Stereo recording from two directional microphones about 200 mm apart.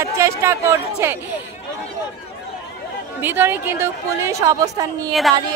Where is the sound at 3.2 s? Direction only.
10° right (ahead or behind).